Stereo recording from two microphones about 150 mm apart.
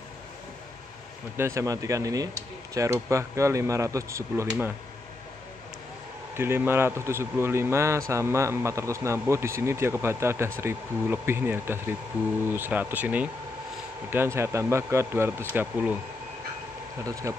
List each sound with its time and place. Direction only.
1.3 s speech: 20° right (ahead or behind)
6.3 s speech: 15° right (ahead or behind)
17.0 s speech: 20° right (ahead or behind)